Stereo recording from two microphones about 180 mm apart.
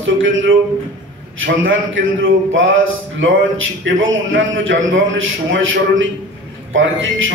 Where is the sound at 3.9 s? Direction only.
90° right.